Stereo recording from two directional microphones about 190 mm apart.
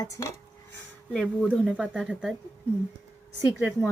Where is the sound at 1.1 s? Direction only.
Centre (ahead or behind).